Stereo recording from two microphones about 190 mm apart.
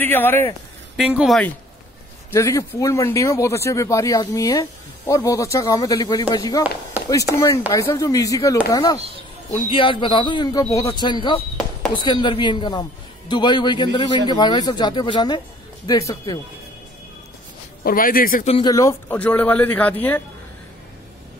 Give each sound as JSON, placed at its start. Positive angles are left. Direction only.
{"t": 0.0, "sound": "speech", "side_deg": 10}
{"t": 0.9, "sound": "a woman's voice", "side_deg": -5}
{"t": 2.3, "sound": "speech", "side_deg": 15}
{"t": 17.8, "sound": "a man's voice", "side_deg": 50}
{"t": 18.5, "sound": "speech", "side_deg": 20}